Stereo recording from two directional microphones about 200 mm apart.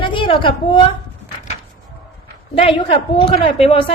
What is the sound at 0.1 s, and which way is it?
Speech, 25° left (ahead or behind).